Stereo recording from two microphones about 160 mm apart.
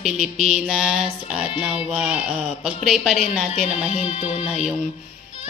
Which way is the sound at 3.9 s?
40° left (ahead or behind).